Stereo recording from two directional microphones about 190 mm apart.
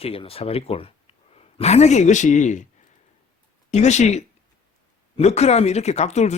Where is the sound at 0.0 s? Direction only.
30° left (ahead or behind).